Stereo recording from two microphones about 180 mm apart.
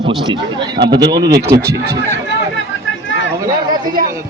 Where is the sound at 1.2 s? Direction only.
60° right (ahead or behind).